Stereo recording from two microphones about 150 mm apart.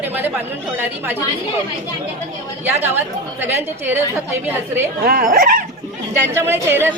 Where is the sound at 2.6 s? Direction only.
15° right (ahead or behind).